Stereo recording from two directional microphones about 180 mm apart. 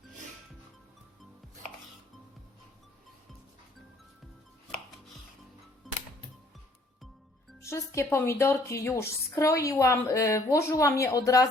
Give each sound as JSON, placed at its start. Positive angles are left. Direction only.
{"t": 5.8, "sound": "music", "side_deg": 0}
{"t": 7.6, "sound": "a woman's voice", "side_deg": 15}